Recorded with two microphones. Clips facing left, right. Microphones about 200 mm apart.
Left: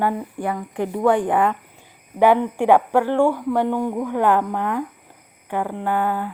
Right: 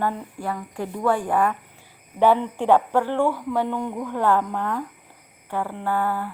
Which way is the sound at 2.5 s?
15° left (ahead or behind).